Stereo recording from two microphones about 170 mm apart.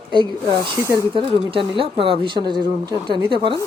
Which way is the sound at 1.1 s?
30° right (ahead or behind).